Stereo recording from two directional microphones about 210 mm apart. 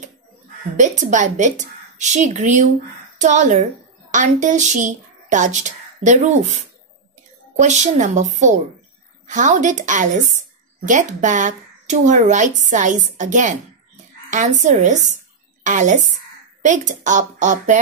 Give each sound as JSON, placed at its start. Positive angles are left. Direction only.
{"t": 0.7, "sound": "speech", "side_deg": -35}
{"t": 9.3, "sound": "speech", "side_deg": -35}